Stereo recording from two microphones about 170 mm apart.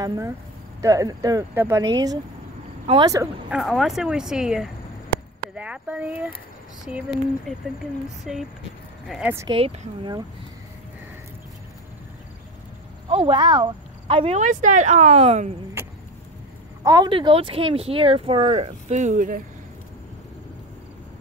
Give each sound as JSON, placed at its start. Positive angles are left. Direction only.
{"t": 0.8, "sound": "speech", "side_deg": -20}
{"t": 3.4, "sound": "speech", "side_deg": -5}
{"t": 9.5, "sound": "speech", "side_deg": -30}
{"t": 13.1, "sound": "speech", "side_deg": -30}
{"t": 15.8, "sound": "chop", "side_deg": -15}
{"t": 16.8, "sound": "speech", "side_deg": -25}